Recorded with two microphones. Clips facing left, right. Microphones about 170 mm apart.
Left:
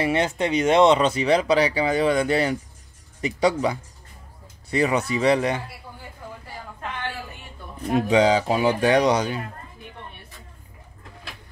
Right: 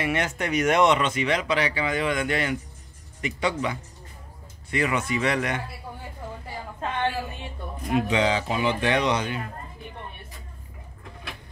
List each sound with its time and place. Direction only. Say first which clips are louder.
0.0 s speech: left 4 dB; 30° left (ahead or behind)
7.9 s speech: left 5 dB; 35° left (ahead or behind)